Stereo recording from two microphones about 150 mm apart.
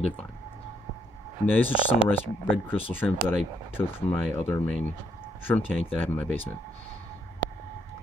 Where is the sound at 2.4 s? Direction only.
10° left (ahead or behind).